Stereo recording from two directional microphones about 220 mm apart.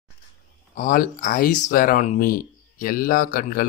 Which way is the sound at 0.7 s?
40° left (ahead or behind).